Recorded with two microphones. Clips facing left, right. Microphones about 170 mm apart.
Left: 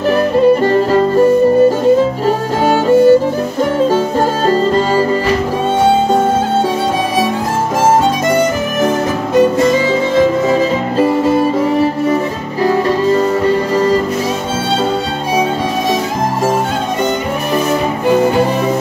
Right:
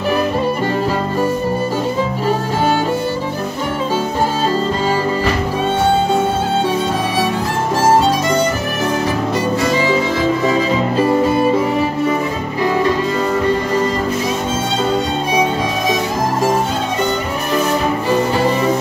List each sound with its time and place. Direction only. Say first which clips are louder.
2.2 s violin: left 3 dB; 45° left (ahead or behind)
12.6 s music: left 4 dB; 35° left (ahead or behind)